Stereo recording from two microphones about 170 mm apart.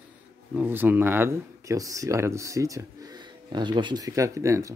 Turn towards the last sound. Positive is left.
turn(degrees=-15)  # may be behind; listen again after turning